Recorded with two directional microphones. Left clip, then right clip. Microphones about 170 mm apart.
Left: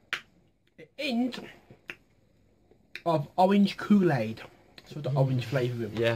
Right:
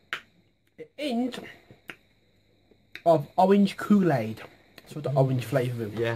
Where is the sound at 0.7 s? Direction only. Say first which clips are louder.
Right 1 dB; 40° right (ahead or behind).